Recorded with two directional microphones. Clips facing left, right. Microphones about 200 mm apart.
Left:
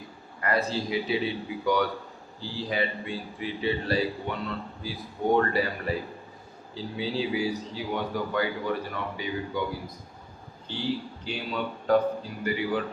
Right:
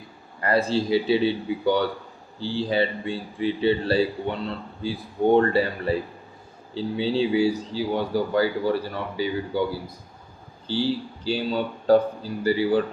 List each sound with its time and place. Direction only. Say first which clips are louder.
0.4 s a man's voice: right 5 dB; 30° right (ahead or behind)
10.7 s a man's voice: right 6 dB; 30° right (ahead or behind)